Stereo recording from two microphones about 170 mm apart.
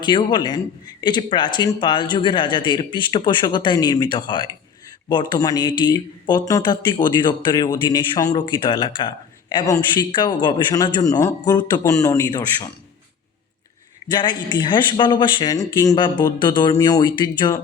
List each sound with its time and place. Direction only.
0.0 s a man's voice: 25° left (ahead or behind)
14.1 s a man's voice: 25° left (ahead or behind)